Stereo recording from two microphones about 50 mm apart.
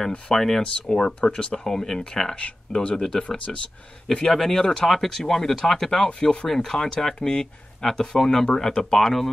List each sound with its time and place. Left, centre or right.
0.4 s speech: centre
2.3 s speech: left
3.0 s speech: centre
4.3 s speech: centre